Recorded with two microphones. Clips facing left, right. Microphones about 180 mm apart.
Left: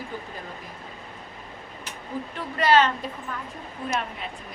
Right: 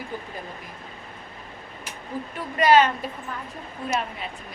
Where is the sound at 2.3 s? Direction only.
10° right (ahead or behind).